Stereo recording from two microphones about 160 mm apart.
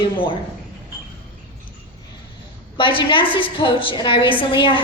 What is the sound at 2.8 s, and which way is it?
A woman's voice, 30° left (ahead or behind).